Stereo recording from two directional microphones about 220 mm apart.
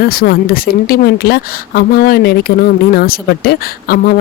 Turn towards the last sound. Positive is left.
turn(degrees=45)  # may be behind; listen again after turning